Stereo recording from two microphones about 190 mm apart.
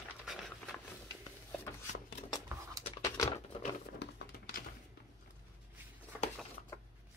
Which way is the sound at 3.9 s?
55° left (ahead or behind).